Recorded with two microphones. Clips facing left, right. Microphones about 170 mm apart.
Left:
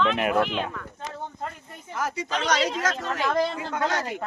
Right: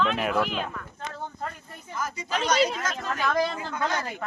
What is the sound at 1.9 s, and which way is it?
Speech, 75° left (ahead or behind).